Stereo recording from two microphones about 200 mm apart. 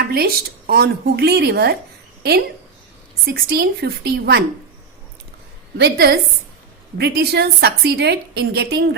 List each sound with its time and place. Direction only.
0.0 s a sound: 50° right (ahead or behind)
0.7 s a woman's voice: 55° right (ahead or behind)
3.2 s a woman's voice: 50° right (ahead or behind)
5.7 s a woman's voice: 55° right (ahead or behind)